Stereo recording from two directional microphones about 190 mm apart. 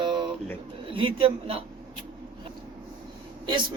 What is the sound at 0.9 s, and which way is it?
Speech, 30° right (ahead or behind).